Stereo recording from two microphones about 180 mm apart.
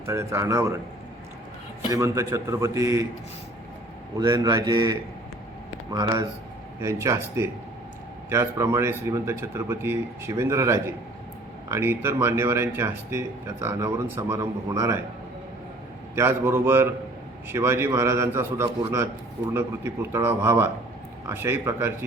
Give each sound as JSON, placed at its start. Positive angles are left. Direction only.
{"t": 0.0, "sound": "speech", "side_deg": -15}
{"t": 1.9, "sound": "speech", "side_deg": -15}
{"t": 4.2, "sound": "speech", "side_deg": -20}
{"t": 16.1, "sound": "speech", "side_deg": -15}